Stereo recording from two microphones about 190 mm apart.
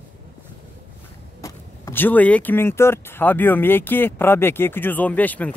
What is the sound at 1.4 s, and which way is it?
Speech, 15° left (ahead or behind).